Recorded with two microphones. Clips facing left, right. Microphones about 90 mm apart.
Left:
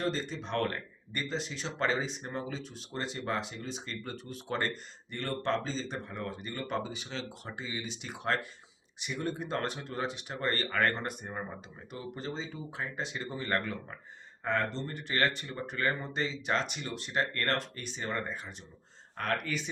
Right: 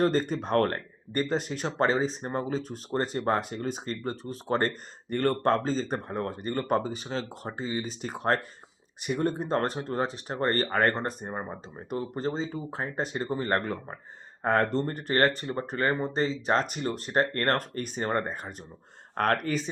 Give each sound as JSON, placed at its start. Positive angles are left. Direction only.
{"t": 0.0, "sound": "speech", "side_deg": -50}
{"t": 1.9, "sound": "speech", "side_deg": -35}
{"t": 5.1, "sound": "speech", "side_deg": -50}
{"t": 11.9, "sound": "speech", "side_deg": -45}
{"t": 14.4, "sound": "speech", "side_deg": -50}